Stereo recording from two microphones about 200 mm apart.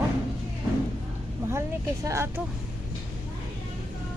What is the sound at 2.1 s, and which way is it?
Speech, 15° right (ahead or behind).